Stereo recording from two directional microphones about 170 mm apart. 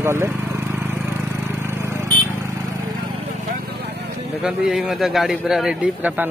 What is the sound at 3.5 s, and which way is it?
Vehicle, 70° right (ahead or behind).